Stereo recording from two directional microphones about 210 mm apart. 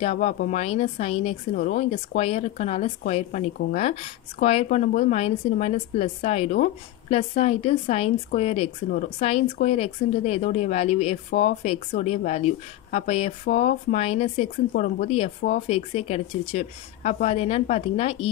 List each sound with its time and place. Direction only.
0.0 s a woman's voice: 35° left (ahead or behind)